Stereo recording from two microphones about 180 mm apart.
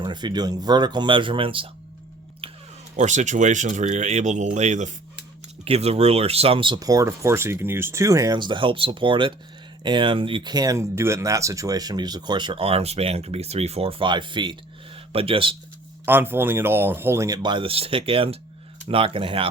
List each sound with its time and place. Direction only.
0.0 s speech: 25° right (ahead or behind)
2.9 s speech: 40° right (ahead or behind)
16.0 s speech: 10° right (ahead or behind); by 19.5 s 30° right (ahead or behind)